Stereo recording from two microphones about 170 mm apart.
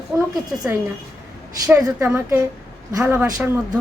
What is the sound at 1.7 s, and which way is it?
A woman's voice, 20° right (ahead or behind).